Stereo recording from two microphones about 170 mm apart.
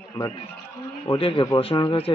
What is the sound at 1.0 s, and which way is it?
Speech, 30° left (ahead or behind).